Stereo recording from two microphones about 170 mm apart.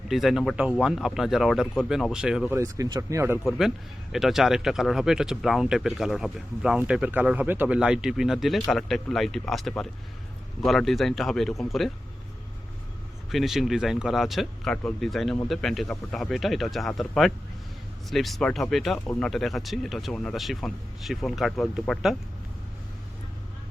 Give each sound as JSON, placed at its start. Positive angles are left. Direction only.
{"t": 0.1, "sound": "speech", "side_deg": 0}
{"t": 2.6, "sound": "speech", "side_deg": -20}
{"t": 4.1, "sound": "speech", "side_deg": 0}
{"t": 13.3, "sound": "speech", "side_deg": 0}